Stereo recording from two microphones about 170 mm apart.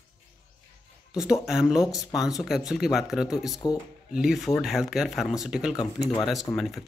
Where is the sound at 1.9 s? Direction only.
20° left (ahead or behind).